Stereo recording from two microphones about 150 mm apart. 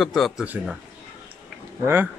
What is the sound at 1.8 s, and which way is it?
Speech, 15° right (ahead or behind).